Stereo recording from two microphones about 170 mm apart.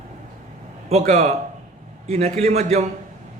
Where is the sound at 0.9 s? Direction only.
40° right (ahead or behind).